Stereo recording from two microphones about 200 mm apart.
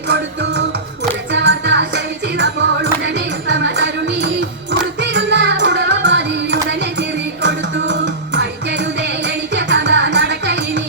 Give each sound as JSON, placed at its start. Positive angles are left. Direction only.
{"t": 1.3, "sound": "music", "side_deg": -60}